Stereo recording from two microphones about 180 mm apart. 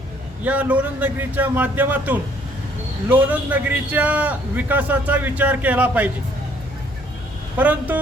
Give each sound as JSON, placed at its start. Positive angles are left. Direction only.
{"t": 0.4, "sound": "a man's voice", "side_deg": -10}
{"t": 7.5, "sound": "a man's voice", "side_deg": -10}